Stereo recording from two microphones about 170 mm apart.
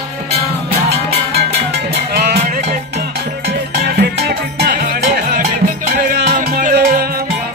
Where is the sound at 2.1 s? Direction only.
70° right (ahead or behind).